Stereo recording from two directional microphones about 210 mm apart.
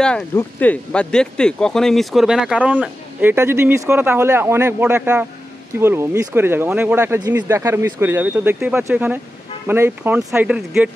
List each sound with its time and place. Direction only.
0.0 s speech: 5° left (ahead or behind)